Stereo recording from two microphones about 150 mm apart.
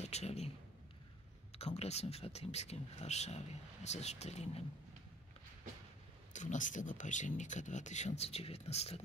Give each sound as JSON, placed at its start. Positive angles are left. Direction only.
{"t": 0.0, "sound": "a man's voice", "side_deg": 45}
{"t": 1.5, "sound": "speech", "side_deg": 45}
{"t": 6.3, "sound": "speech", "side_deg": 55}